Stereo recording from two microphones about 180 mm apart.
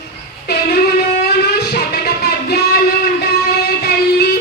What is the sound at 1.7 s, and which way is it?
Music, 60° left (ahead or behind).